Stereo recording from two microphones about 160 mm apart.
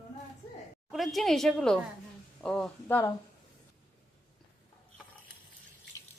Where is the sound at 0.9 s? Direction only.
Centre (ahead or behind).